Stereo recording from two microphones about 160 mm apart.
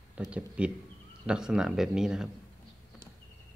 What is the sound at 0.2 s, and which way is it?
Speech, 10° right (ahead or behind).